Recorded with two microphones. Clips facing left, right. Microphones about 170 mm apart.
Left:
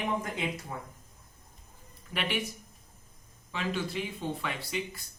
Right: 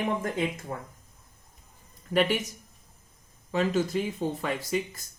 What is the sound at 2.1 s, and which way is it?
Speech, 40° right (ahead or behind).